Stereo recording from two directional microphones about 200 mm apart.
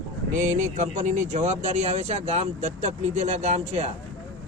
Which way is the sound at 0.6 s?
35° right (ahead or behind).